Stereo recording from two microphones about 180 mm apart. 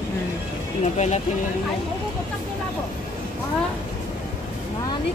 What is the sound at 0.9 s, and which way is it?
Speech, 40° left (ahead or behind).